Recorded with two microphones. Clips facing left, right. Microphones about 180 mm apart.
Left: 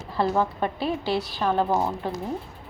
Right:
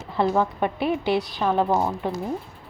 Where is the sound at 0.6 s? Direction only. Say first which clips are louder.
Right 3 dB; 20° right (ahead or behind).